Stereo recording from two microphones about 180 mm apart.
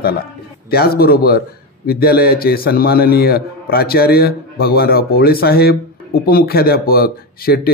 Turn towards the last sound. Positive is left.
turn(degrees=60)  # may be behind; listen again after turning